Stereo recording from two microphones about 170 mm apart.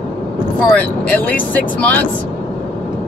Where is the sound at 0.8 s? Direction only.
10° left (ahead or behind).